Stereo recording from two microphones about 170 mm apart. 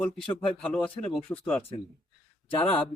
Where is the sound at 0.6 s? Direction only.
5° left (ahead or behind).